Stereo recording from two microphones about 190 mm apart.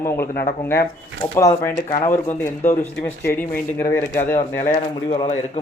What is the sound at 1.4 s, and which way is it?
Speech, 20° left (ahead or behind).